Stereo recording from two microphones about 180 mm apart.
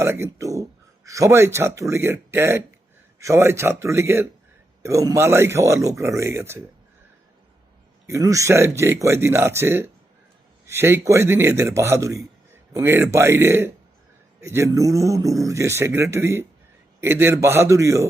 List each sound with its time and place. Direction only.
0.0 s a man's voice: 15° right (ahead or behind)
8.0 s a man's voice: 15° right (ahead or behind)